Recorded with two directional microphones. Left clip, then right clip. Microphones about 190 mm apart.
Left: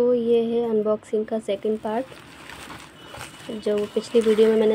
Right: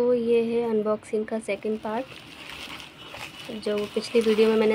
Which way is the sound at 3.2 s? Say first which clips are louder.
Left 3 dB; 20° left (ahead or behind).